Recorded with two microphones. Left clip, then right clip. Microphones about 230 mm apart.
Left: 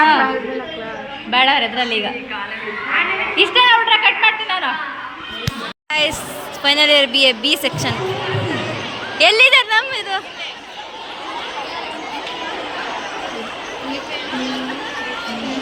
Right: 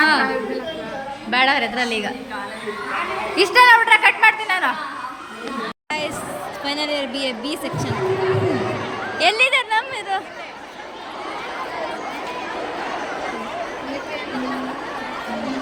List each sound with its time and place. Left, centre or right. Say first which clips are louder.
0.0 s chatter: left 4 dB; centre
1.3 s a woman's voice: left 3 dB; centre
3.3 s a woman's voice: right 1 dB; centre
5.9 s a sound: left 8 dB; centre
6.6 s a woman's voice: left 12 dB; centre
9.1 s a woman's voice: left 6 dB; centre